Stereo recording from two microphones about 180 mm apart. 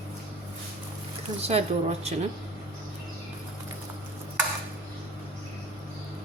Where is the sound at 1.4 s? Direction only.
35° right (ahead or behind).